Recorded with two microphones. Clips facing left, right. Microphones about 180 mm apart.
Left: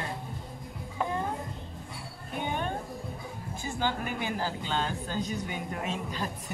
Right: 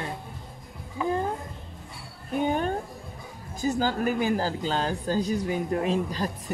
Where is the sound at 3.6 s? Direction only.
40° right (ahead or behind).